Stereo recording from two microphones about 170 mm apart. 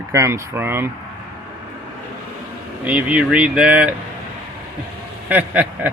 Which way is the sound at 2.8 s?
10° right (ahead or behind).